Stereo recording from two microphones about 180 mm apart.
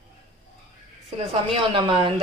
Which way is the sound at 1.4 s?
30° right (ahead or behind).